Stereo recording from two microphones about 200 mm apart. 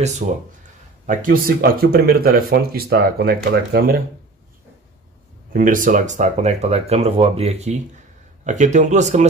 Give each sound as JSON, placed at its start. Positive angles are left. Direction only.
{"t": 0.2, "sound": "speech", "side_deg": -40}
{"t": 5.5, "sound": "speech", "side_deg": -40}